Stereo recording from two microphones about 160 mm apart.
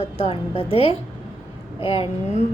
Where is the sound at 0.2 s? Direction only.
35° left (ahead or behind).